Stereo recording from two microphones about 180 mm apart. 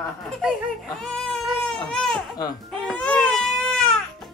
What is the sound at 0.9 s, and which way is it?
Baby cry, 5° left (ahead or behind).